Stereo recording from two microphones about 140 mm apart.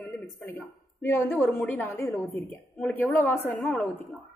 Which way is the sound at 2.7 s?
5° left (ahead or behind).